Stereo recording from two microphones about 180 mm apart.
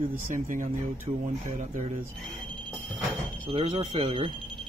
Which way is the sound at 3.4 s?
30° right (ahead or behind).